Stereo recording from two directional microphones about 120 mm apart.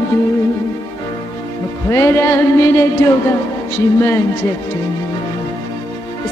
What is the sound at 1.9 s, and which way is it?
Music, 20° left (ahead or behind).